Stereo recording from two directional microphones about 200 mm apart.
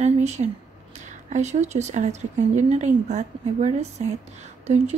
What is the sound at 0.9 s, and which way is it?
Speech, 35° right (ahead or behind).